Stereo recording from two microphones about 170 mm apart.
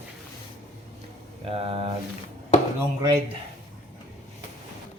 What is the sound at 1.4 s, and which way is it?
Speech, 35° right (ahead or behind).